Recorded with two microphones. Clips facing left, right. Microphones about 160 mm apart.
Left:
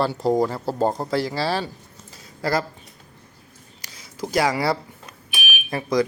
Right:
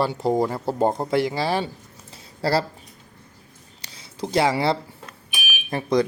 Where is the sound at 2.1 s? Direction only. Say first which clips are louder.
Right 1 dB; 30° right (ahead or behind).